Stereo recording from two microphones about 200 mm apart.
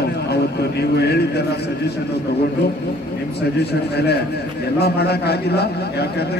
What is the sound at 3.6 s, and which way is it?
A man's voice, 55° left (ahead or behind).